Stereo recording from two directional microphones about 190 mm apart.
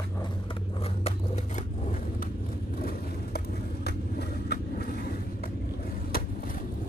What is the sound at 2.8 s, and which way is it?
Vehicle, 50° left (ahead or behind).